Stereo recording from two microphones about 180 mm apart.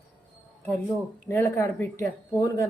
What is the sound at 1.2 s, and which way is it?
Speech, 15° left (ahead or behind).